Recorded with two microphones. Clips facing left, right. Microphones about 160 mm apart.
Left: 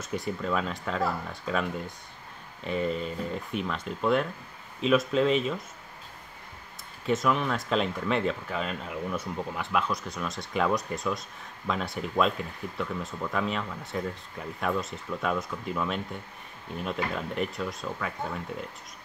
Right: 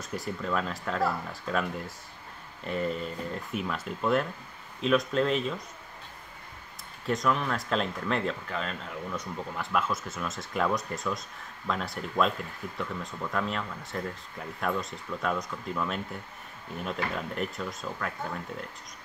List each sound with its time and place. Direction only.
0.0 s speech: centre (ahead or behind)
7.1 s speech: centre (ahead or behind)